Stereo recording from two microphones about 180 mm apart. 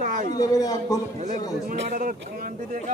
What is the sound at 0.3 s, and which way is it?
Speech, 20° left (ahead or behind).